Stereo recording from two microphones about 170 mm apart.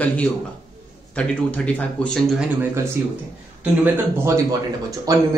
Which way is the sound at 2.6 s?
15° right (ahead or behind).